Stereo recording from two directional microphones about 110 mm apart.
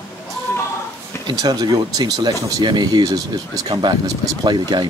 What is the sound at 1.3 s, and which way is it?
Speech, 40° right (ahead or behind).